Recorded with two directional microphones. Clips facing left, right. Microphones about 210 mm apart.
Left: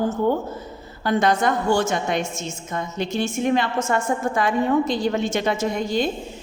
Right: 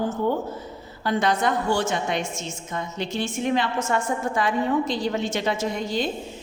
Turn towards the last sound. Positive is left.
turn(degrees=50)  # may be behind; listen again after turning